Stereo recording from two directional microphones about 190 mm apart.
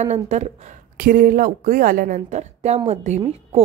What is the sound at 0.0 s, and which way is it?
Speech, 35° right (ahead or behind).